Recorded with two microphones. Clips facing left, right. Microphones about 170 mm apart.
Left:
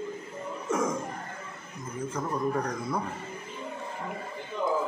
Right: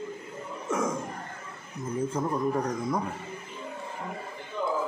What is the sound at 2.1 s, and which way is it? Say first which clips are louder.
Speech: left 1 dB; 20° right (ahead or behind).